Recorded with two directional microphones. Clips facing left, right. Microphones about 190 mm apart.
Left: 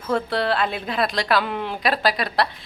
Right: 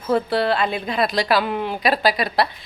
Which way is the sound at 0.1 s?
5° right (ahead or behind).